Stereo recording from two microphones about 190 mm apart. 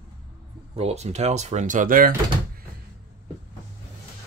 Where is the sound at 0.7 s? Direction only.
35° right (ahead or behind).